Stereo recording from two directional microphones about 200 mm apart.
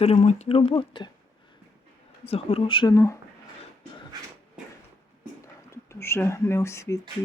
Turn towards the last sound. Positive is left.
turn(degrees=15)  # may be behind; listen again after turning